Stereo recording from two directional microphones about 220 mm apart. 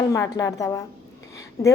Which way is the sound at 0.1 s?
15° left (ahead or behind).